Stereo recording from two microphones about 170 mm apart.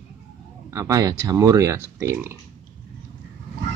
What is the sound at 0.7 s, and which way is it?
Speech, 20° right (ahead or behind).